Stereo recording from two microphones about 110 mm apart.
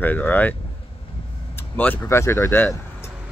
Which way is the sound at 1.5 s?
15° left (ahead or behind).